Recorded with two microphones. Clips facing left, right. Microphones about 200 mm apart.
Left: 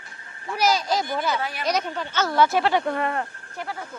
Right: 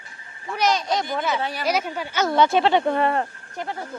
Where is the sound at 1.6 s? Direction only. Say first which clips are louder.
Right 1 dB; 5° right (ahead or behind).